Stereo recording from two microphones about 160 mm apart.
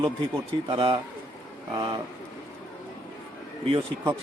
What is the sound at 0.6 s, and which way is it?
A man's voice, 30° right (ahead or behind).